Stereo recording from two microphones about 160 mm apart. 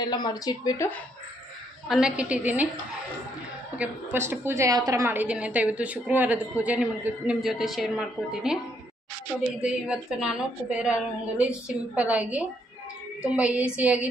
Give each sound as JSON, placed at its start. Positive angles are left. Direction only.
{"t": 0.0, "sound": "speech", "side_deg": 25}
{"t": 1.9, "sound": "a woman's voice", "side_deg": -5}
{"t": 3.7, "sound": "a woman's voice", "side_deg": -10}
{"t": 9.6, "sound": "a woman's voice", "side_deg": -5}